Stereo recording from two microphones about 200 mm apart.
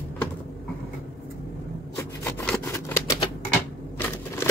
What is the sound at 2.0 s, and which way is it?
Rub, 15° left (ahead or behind).